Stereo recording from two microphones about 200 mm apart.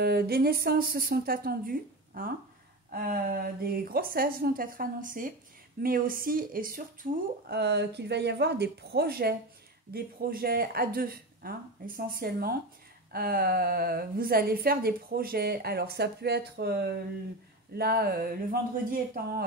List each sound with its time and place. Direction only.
0.0 s a woman's voice: 50° right (ahead or behind)